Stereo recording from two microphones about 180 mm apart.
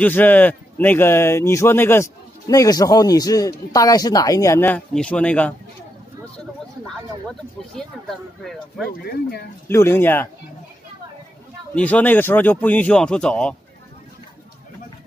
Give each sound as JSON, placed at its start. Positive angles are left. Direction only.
{"t": 0.0, "sound": "speech", "side_deg": 10}
{"t": 7.2, "sound": "speech", "side_deg": 0}
{"t": 8.9, "sound": "speech", "side_deg": 60}
{"t": 9.7, "sound": "speech", "side_deg": 15}
{"t": 11.7, "sound": "speech", "side_deg": 10}